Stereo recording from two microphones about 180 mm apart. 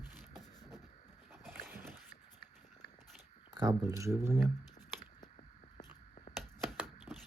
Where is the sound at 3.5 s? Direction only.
20° right (ahead or behind).